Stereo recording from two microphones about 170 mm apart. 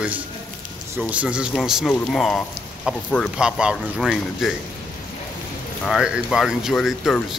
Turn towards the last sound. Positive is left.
turn(degrees=0)  # may be behind; listen again after turning